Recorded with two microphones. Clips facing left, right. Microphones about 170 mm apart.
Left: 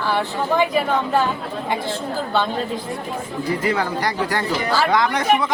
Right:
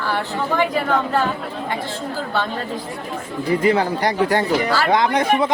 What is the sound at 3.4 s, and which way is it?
Speech, 25° right (ahead or behind).